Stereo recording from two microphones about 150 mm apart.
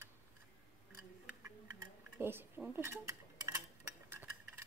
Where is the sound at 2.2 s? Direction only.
15° right (ahead or behind).